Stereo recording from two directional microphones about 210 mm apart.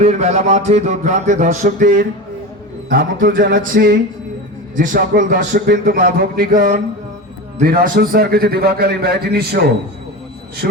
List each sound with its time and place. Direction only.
0.0 s a man's voice: 30° right (ahead or behind)